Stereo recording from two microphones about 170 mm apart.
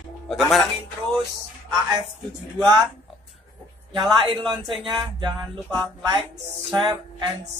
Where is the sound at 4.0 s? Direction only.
30° right (ahead or behind).